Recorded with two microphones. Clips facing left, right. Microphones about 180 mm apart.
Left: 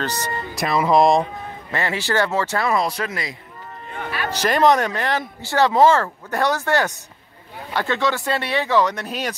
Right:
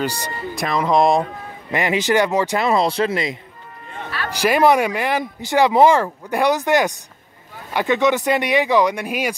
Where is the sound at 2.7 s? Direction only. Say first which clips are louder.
Right 4 dB; 25° right (ahead or behind).